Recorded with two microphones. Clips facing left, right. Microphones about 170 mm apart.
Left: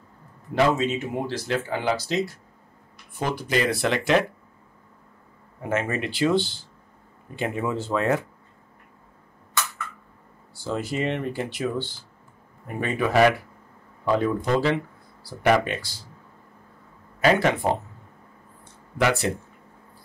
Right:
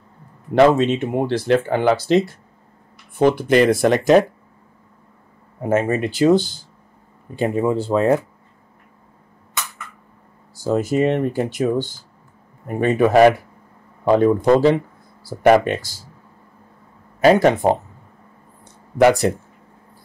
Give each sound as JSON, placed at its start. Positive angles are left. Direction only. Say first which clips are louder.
{"t": 0.6, "sound": "speech", "louder": "right 8 dB", "side_deg": -65}
{"t": 5.6, "sound": "speech", "louder": "right 7 dB", "side_deg": -35}
{"t": 9.5, "sound": "a sound", "louder": "left 1 dB", "side_deg": -20}
{"t": 10.5, "sound": "speech", "louder": "right 9 dB", "side_deg": -45}
{"t": 17.2, "sound": "speech", "louder": "right 7 dB", "side_deg": -40}